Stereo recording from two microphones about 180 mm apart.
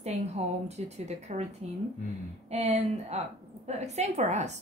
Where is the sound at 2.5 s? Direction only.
35° right (ahead or behind).